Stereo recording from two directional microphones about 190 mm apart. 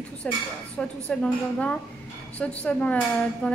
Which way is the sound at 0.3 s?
5° left (ahead or behind).